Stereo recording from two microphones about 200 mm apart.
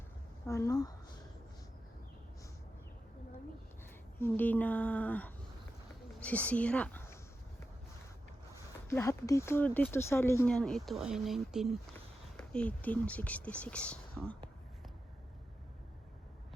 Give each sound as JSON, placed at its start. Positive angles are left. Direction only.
{"t": 0.4, "sound": "speech", "side_deg": 15}
{"t": 4.2, "sound": "a woman's voice", "side_deg": 10}
{"t": 8.9, "sound": "speech", "side_deg": 15}